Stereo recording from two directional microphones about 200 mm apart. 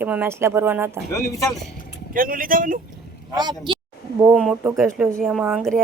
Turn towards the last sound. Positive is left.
turn(degrees=-5)  # may be behind; listen again after turning